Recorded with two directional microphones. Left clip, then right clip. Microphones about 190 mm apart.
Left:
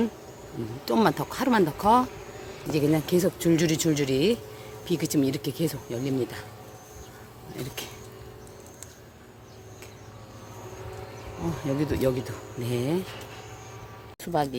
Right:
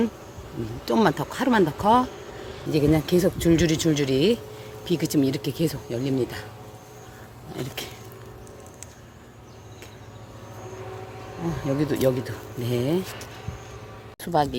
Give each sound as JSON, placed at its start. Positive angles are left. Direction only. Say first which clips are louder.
{"t": 0.9, "sound": "speech", "louder": "right 2 dB", "side_deg": 5}
{"t": 7.5, "sound": "a sound", "louder": "right 3 dB", "side_deg": -5}
{"t": 11.3, "sound": "speech", "louder": "right 3 dB", "side_deg": 5}
{"t": 14.2, "sound": "speech", "louder": "right 4 dB", "side_deg": -5}